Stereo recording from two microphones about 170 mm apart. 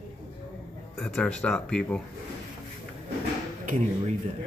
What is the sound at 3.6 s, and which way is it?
Speech, 50° right (ahead or behind).